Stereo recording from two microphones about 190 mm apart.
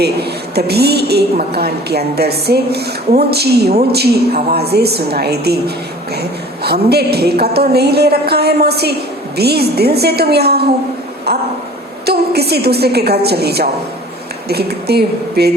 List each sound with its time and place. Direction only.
0.0 s a woman's voice: 60° right (ahead or behind)
11.3 s a sound: 55° right (ahead or behind)
12.0 s a woman's voice: 55° right (ahead or behind)